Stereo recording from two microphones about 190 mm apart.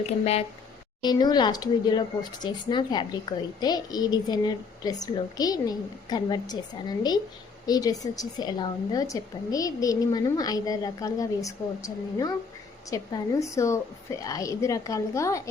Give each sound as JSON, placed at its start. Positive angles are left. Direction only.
{"t": 1.0, "sound": "a woman's voice", "side_deg": 20}